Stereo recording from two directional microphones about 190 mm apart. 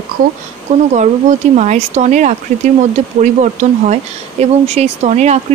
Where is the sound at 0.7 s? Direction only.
35° right (ahead or behind).